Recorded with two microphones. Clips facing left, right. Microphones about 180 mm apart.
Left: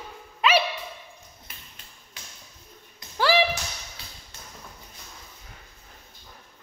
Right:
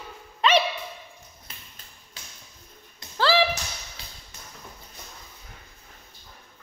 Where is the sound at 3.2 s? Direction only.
15° left (ahead or behind).